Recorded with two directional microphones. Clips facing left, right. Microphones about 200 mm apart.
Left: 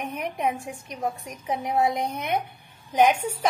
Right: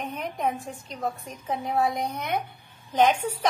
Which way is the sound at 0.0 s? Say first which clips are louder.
Left 1 dB; 10° left (ahead or behind).